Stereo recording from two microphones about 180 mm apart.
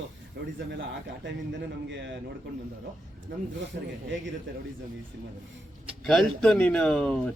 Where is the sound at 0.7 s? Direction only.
80° right.